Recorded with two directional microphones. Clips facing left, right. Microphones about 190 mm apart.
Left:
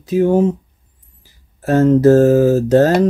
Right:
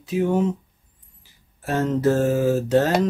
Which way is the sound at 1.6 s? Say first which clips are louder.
Left 10 dB; 45° left (ahead or behind).